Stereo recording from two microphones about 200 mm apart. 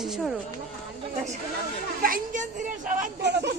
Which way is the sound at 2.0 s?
40° right (ahead or behind).